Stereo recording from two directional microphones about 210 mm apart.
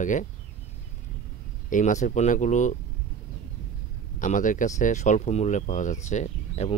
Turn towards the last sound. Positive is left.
turn(degrees=35)  # may be behind; listen again after turning